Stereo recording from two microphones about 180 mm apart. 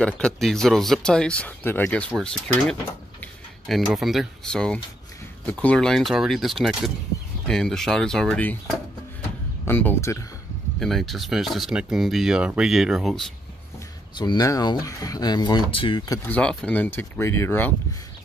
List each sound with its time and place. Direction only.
0.0 s speech: 5° left (ahead or behind)
10.8 s speech: centre (ahead or behind)
14.1 s speech: 25° left (ahead or behind)
16.3 s speech: 10° left (ahead or behind)